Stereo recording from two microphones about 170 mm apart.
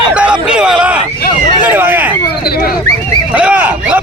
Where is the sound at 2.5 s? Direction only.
60° left (ahead or behind).